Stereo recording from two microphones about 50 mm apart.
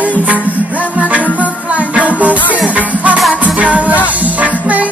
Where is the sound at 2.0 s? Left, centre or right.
Right.